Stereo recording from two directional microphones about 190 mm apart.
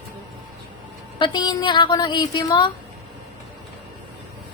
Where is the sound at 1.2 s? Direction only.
25° left (ahead or behind).